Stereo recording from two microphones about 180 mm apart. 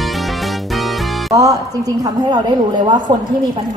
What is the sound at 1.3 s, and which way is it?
A woman's voice, 20° right (ahead or behind).